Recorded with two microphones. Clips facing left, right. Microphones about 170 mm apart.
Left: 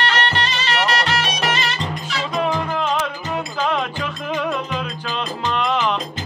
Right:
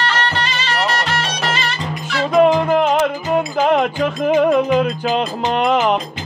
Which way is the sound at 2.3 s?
50° right (ahead or behind).